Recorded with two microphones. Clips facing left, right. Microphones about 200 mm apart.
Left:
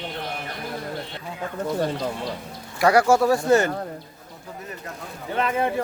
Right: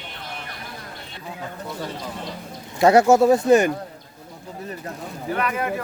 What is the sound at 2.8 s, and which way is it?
Speech, 25° right (ahead or behind).